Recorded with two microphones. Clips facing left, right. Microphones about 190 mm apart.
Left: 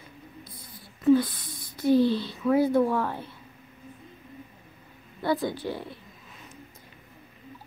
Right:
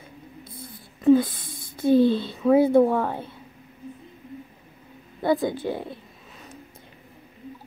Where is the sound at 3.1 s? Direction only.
55° right (ahead or behind).